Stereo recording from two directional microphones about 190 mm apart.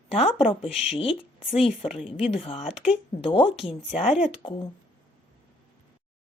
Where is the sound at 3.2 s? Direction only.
25° left (ahead or behind).